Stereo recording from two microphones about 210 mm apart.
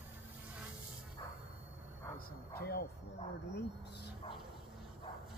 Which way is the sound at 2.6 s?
50° left (ahead or behind).